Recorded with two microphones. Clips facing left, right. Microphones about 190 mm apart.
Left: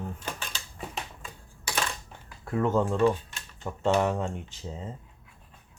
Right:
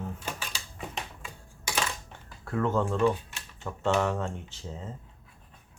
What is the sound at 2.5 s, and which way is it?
Speech, 15° left (ahead or behind).